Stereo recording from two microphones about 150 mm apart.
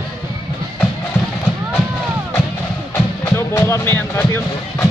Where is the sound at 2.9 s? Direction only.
20° left (ahead or behind).